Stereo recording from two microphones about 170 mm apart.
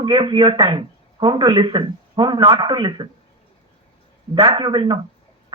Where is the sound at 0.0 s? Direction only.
25° right (ahead or behind).